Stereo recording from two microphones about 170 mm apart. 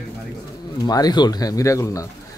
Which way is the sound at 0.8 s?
25° left (ahead or behind).